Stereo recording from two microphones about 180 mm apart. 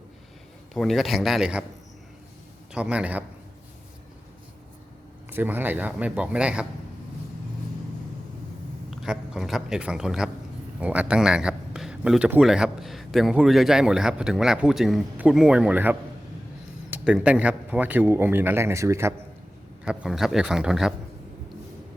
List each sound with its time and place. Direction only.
0.7 s a man's voice: centre (ahead or behind)
2.7 s a man's voice: 5° right (ahead or behind)
5.3 s a man's voice: 10° right (ahead or behind)
8.9 s a man's voice: 5° right (ahead or behind)
19.8 s a man's voice: 5° right (ahead or behind)